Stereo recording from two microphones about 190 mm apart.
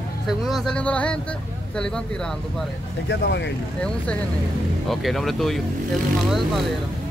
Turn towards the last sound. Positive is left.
turn(degrees=0)  # may be behind; listen again after turning